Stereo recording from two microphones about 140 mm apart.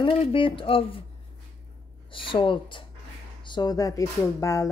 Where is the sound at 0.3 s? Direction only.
40° left (ahead or behind).